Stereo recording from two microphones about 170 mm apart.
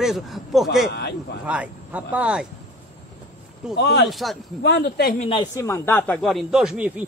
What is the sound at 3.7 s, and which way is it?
Speech, 75° left (ahead or behind).